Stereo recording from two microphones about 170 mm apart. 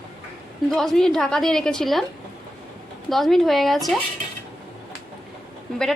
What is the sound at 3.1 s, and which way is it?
Speech, centre (ahead or behind).